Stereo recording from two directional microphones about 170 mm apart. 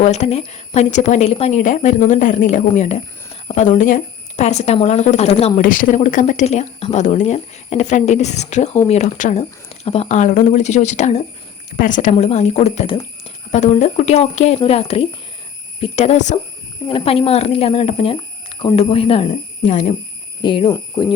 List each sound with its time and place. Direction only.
0.0 s speech: 40° left (ahead or behind)
5.6 s speech: 55° left (ahead or behind)
9.6 s speech: 35° left (ahead or behind)
12.1 s speech: 40° left (ahead or behind)
19.7 s speech: 45° left (ahead or behind)
20.4 s speech: 30° left (ahead or behind)